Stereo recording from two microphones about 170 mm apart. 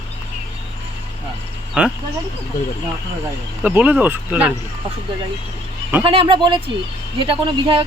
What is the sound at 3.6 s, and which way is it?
Speech, 10° right (ahead or behind).